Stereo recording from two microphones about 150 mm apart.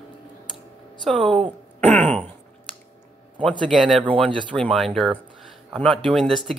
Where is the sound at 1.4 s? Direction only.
45° right (ahead or behind).